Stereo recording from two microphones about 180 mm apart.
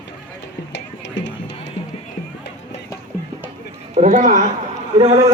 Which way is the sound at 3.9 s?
40° right (ahead or behind).